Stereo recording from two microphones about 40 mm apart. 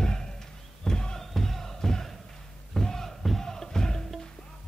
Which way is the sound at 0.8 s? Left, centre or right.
Centre.